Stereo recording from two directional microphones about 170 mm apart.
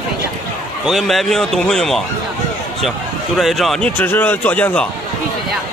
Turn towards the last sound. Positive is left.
turn(degrees=10)  # may be behind; listen again after turning